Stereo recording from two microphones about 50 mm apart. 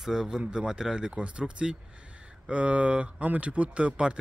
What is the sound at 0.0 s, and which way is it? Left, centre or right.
A man's voice, centre.